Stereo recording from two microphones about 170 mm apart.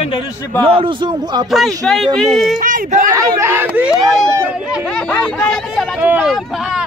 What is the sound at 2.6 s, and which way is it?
Speech, 50° right (ahead or behind).